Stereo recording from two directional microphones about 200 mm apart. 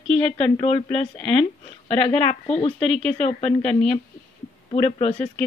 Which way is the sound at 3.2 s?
30° left (ahead or behind).